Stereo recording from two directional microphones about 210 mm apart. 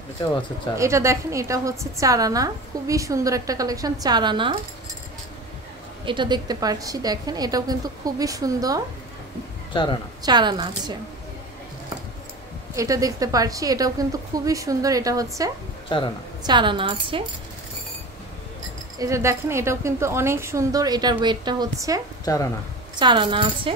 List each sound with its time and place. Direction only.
0.2 s speech: 20° left (ahead or behind)
0.7 s a woman's voice: 15° right (ahead or behind)
6.0 s a woman's voice: 20° right (ahead or behind)
9.7 s speech: 25° left (ahead or behind)
10.2 s a woman's voice: 20° right (ahead or behind)
12.7 s a woman's voice: 15° right (ahead or behind)
16.4 s a woman's voice: 20° right (ahead or behind)
18.9 s a woman's voice: 15° right (ahead or behind)
22.2 s speech: 15° left (ahead or behind)
22.9 s a woman's voice: 20° right (ahead or behind)